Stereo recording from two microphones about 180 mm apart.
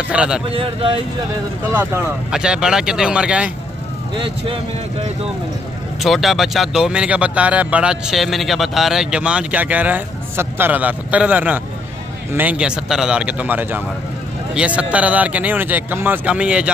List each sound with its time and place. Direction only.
0.1 s speech: 5° right (ahead or behind)
0.5 s speech: 30° right (ahead or behind)
2.3 s speech: 5° right (ahead or behind)
4.1 s speech: 30° right (ahead or behind)
6.0 s speech: centre (ahead or behind)